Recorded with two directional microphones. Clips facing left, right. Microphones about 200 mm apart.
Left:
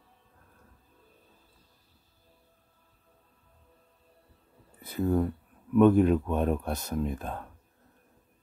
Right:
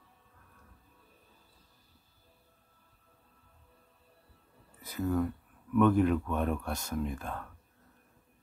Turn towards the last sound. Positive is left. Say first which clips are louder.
# left 3 dB
turn(degrees=20)  # may be behind; listen again after turning